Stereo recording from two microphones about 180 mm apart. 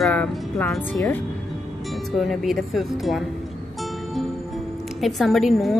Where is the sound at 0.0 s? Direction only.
10° left (ahead or behind).